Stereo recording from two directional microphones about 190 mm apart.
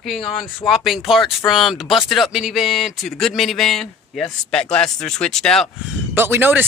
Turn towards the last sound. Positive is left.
turn(degrees=-10)  # may be behind; listen again after turning